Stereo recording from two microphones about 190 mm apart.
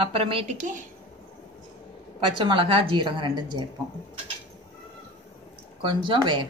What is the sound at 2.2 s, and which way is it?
A woman's voice, 25° right (ahead or behind).